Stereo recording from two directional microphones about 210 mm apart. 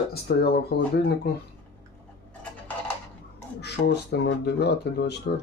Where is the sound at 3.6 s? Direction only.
50° left (ahead or behind).